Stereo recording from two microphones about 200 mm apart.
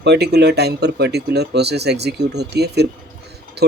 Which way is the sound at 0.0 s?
55° right (ahead or behind).